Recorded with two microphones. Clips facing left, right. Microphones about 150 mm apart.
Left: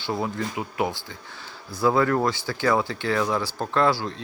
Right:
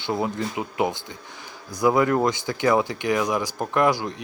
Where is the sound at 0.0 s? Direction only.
20° right (ahead or behind).